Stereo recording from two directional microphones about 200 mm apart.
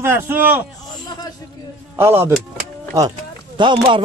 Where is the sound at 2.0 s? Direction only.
10° right (ahead or behind).